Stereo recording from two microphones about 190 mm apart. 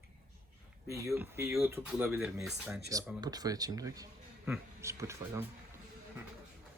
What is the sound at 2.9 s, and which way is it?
Speech, 20° right (ahead or behind).